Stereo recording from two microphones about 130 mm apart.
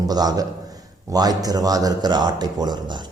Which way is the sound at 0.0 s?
30° right (ahead or behind).